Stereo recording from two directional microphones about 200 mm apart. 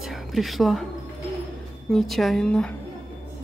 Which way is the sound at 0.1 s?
Centre (ahead or behind).